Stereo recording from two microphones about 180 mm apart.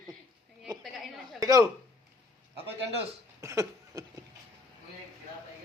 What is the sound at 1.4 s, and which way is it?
Speech, 20° right (ahead or behind).